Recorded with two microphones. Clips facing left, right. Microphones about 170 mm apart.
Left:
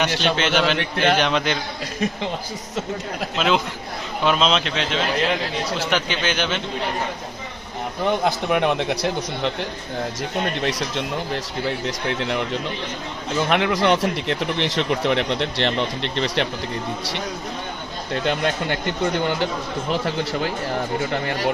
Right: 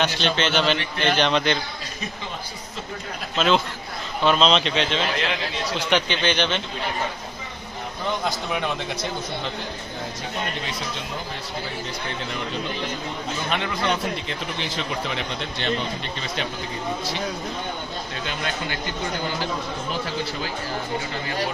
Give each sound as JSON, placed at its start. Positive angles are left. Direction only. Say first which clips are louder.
{"t": 0.0, "sound": "a man's voice", "louder": "left 2 dB", "side_deg": 10}
{"t": 3.3, "sound": "a man's voice", "louder": "right 1 dB", "side_deg": 5}
{"t": 8.2, "sound": "speech", "louder": "left 6 dB", "side_deg": 60}
{"t": 10.6, "sound": "speech", "louder": "left 7 dB", "side_deg": 85}
{"t": 13.5, "sound": "speech", "louder": "left 7 dB", "side_deg": 70}
{"t": 18.1, "sound": "speech", "louder": "left 10 dB", "side_deg": 60}